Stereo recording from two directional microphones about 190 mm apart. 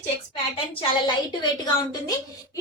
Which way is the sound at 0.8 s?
20° left (ahead or behind).